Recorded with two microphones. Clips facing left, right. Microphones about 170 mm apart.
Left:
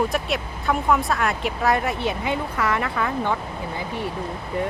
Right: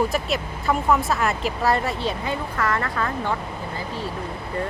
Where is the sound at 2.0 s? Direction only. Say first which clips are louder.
Left 1 dB; 20° left (ahead or behind).